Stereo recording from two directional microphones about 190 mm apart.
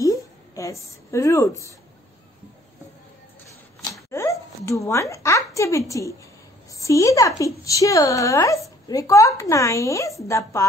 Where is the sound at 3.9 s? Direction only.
15° left (ahead or behind).